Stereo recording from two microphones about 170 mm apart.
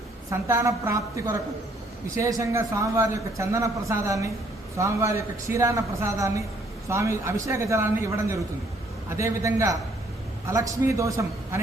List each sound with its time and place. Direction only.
0.3 s a man's voice: 15° right (ahead or behind)